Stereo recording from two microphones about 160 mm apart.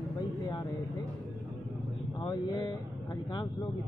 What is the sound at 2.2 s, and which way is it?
Speech, 25° left (ahead or behind).